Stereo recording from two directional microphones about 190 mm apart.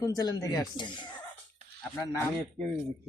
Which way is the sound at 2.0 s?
15° left (ahead or behind).